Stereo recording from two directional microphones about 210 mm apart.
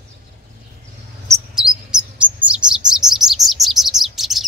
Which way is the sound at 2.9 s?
Centre (ahead or behind).